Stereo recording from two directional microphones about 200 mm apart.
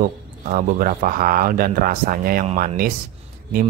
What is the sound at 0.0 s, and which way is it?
Speech, 40° right (ahead or behind).